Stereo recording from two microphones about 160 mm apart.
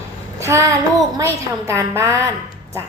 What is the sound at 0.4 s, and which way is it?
A woman's voice, 20° right (ahead or behind).